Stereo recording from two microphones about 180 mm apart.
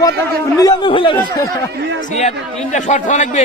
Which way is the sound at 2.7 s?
40° left (ahead or behind).